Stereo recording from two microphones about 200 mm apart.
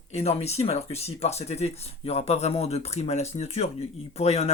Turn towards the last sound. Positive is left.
turn(degrees=30)  # may be behind; listen again after turning